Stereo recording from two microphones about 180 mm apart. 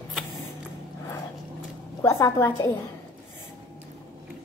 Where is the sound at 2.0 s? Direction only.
15° left (ahead or behind).